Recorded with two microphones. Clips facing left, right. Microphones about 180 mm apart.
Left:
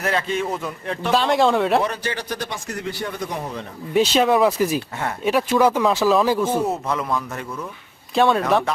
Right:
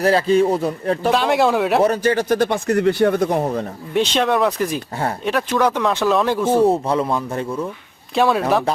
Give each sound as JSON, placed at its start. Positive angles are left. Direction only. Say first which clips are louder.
{"t": 0.0, "sound": "speech", "louder": "right 8 dB", "side_deg": -35}
{"t": 1.1, "sound": "speech", "louder": "left 1 dB", "side_deg": -5}
{"t": 1.8, "sound": "a man's voice", "louder": "right 9 dB", "side_deg": -45}
{"t": 3.9, "sound": "speech", "louder": "left 1 dB", "side_deg": 5}
{"t": 6.5, "sound": "speech", "louder": "right 7 dB", "side_deg": -30}
{"t": 8.1, "sound": "speech", "louder": "right 1 dB", "side_deg": 0}